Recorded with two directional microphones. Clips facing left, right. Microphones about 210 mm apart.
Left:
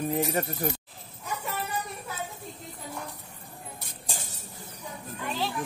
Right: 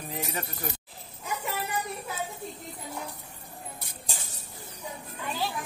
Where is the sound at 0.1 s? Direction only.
45° left (ahead or behind).